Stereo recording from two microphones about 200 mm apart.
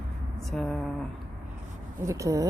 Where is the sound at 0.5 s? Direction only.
5° left (ahead or behind).